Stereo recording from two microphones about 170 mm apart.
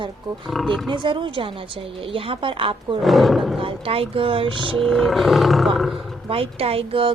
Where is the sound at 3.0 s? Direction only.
Centre (ahead or behind).